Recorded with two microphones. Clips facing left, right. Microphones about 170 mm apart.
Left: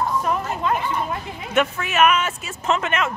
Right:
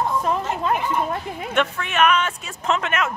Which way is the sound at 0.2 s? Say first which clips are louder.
Even; 25° right (ahead or behind).